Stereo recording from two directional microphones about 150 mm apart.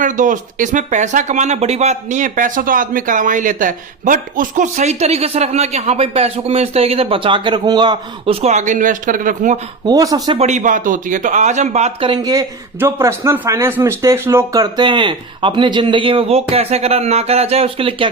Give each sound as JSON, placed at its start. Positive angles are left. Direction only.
{"t": 0.0, "sound": "speech", "side_deg": -60}
{"t": 8.3, "sound": "speech", "side_deg": -45}
{"t": 9.8, "sound": "speech", "side_deg": -25}
{"t": 10.3, "sound": "a man's voice", "side_deg": -50}